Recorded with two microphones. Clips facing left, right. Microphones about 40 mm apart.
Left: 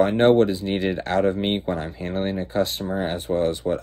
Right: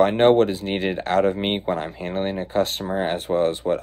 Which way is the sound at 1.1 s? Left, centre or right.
Right.